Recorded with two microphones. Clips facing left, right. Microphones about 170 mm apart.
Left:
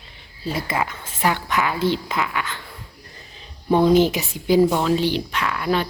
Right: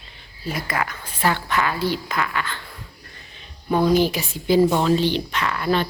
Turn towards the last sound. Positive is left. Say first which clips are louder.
# even
turn(degrees=5)  # may be behind; listen again after turning